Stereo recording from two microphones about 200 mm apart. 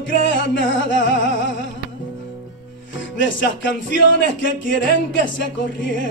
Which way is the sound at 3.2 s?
65° left (ahead or behind).